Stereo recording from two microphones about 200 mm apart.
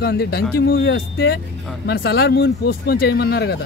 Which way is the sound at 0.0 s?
50° left (ahead or behind).